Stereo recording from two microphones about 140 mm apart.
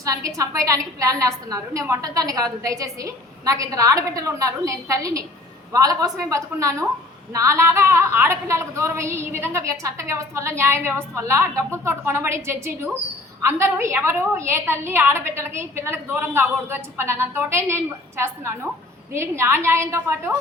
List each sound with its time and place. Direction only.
0.0 s a woman's voice: 25° right (ahead or behind)